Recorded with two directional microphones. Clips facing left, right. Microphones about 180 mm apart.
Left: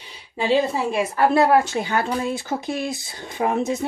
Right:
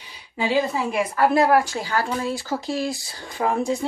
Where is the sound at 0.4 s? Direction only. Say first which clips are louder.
Left 2 dB; 25° left (ahead or behind).